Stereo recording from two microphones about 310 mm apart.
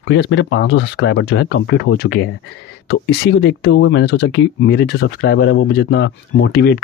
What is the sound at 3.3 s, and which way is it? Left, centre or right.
Speech, left.